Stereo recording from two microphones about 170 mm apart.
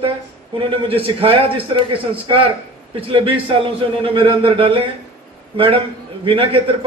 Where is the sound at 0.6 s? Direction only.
30° right (ahead or behind).